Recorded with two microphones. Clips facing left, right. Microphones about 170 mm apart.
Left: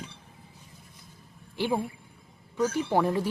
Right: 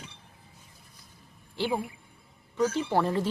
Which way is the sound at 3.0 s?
10° left (ahead or behind).